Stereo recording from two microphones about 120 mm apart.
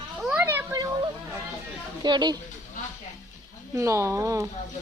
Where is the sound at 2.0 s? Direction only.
35° right (ahead or behind).